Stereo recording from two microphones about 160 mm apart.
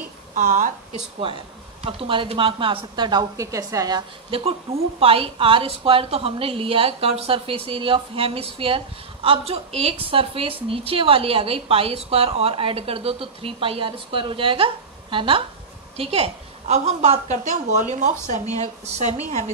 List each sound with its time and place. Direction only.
0.3 s a woman's voice: 50° right (ahead or behind)
1.2 s a woman's voice: 35° right (ahead or behind)
4.3 s a woman's voice: 35° right (ahead or behind)